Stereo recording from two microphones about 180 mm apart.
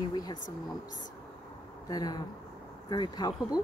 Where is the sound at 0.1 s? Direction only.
20° left (ahead or behind).